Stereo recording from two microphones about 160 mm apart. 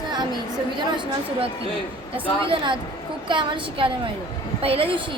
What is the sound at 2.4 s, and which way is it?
A woman's voice, 30° right (ahead or behind).